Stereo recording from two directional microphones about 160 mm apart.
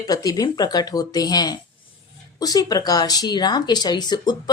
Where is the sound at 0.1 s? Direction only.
25° left (ahead or behind).